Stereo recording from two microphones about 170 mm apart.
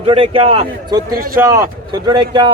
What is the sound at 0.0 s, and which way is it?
Speech, 35° right (ahead or behind).